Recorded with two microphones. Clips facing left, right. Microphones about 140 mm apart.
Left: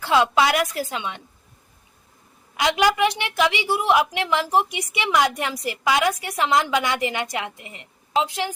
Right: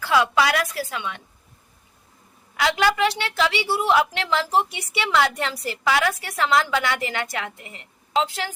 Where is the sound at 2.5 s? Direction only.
20° left (ahead or behind).